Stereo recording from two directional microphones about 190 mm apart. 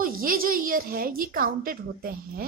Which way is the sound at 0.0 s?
50° right (ahead or behind).